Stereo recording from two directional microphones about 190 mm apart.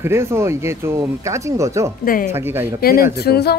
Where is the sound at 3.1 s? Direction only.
55° left (ahead or behind).